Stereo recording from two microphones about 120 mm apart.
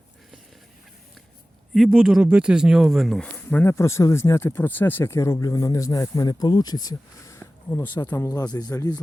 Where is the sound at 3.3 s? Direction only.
15° left (ahead or behind).